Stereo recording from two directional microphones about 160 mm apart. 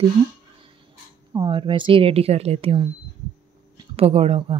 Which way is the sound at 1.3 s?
30° right (ahead or behind).